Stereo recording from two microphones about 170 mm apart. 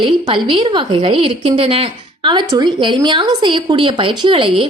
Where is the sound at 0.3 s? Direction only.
30° right (ahead or behind).